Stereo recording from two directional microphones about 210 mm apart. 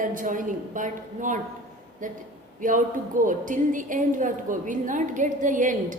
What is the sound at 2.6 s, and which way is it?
A woman's voice, 40° right (ahead or behind).